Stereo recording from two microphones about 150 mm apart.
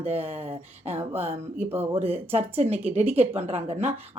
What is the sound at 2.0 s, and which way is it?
Speech, 40° right (ahead or behind).